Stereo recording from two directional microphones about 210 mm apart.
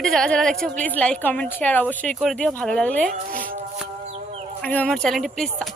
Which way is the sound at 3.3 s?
40° right (ahead or behind).